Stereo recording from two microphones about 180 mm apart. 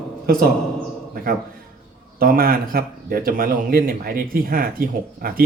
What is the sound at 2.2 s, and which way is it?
Speech, 55° right (ahead or behind).